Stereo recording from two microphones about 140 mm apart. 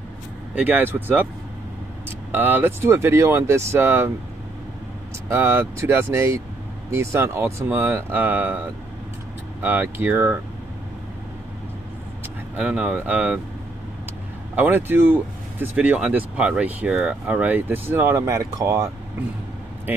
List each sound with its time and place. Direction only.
0.6 s speech: 15° right (ahead or behind)
5.3 s speech: 20° right (ahead or behind)
9.6 s speech: 15° right (ahead or behind)
12.5 s speech: 10° right (ahead or behind)
14.5 s speech: 15° right (ahead or behind)